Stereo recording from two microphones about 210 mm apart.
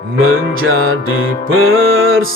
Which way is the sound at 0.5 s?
75° right (ahead or behind).